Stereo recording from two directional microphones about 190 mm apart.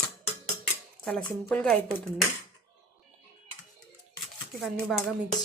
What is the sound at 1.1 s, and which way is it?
Speech, 5° left (ahead or behind).